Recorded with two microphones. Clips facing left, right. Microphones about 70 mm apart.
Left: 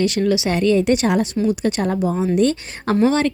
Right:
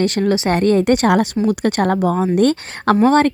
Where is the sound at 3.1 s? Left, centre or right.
Right.